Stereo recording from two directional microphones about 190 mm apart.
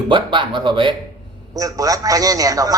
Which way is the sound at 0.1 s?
25° right (ahead or behind).